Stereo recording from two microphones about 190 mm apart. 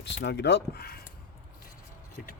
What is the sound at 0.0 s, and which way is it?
Speech, 65° left (ahead or behind).